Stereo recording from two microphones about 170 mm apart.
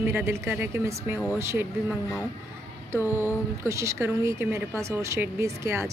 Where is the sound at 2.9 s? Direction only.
15° left (ahead or behind).